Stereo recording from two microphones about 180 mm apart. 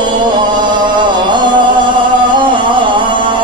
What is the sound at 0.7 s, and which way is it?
Chant, 25° right (ahead or behind).